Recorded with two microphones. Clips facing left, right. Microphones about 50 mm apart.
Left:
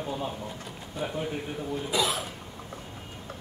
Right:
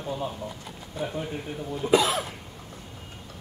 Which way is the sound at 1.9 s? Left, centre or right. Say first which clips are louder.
Right 7 dB; right.